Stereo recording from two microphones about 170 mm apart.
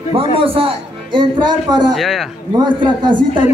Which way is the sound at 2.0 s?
Centre (ahead or behind).